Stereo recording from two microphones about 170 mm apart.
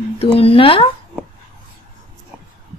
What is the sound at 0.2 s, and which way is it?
Female singing, 35° left (ahead or behind).